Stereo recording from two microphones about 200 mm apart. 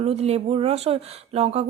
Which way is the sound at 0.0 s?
30° right (ahead or behind).